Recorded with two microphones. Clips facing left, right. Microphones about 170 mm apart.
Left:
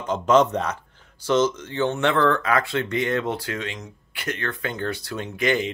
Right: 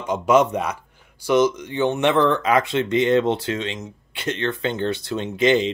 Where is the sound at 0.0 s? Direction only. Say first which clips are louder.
Right 1 dB; 10° right (ahead or behind).